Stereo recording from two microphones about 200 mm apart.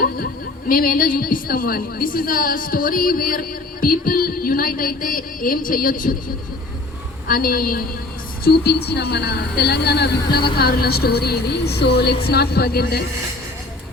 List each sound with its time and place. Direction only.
0.7 s a woman's voice: 45° left (ahead or behind)